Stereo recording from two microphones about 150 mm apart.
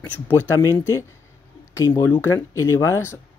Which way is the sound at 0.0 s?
15° left (ahead or behind).